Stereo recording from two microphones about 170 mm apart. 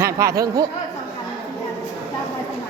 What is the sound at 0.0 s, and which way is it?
Speech, 20° right (ahead or behind).